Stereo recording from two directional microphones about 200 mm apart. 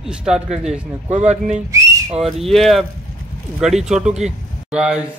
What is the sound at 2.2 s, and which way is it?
A man's voice, centre (ahead or behind).